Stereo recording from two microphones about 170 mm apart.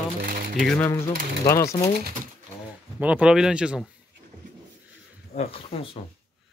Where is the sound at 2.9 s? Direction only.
10° right (ahead or behind).